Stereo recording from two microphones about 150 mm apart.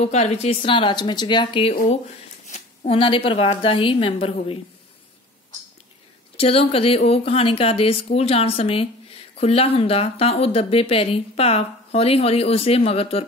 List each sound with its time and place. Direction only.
0.0 s speech: 45° left (ahead or behind)
2.4 s a sound: 50° left (ahead or behind)
3.0 s speech: 35° left (ahead or behind)
6.3 s speech: 40° left (ahead or behind)